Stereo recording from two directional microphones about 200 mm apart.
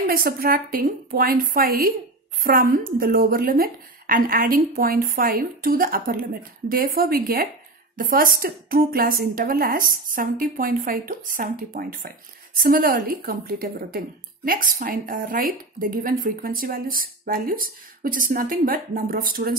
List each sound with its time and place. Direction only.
0.0 s speech: 45° right (ahead or behind)